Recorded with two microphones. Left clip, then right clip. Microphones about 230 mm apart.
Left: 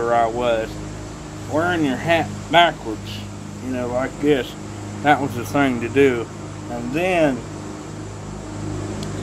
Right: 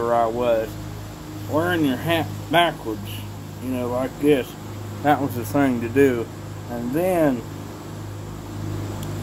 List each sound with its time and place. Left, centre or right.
0.0 s speech: centre
3.7 s speech: centre